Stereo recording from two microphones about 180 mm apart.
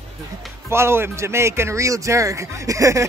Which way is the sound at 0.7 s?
15° right (ahead or behind).